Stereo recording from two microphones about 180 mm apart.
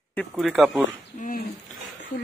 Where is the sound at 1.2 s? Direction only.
50° left (ahead or behind).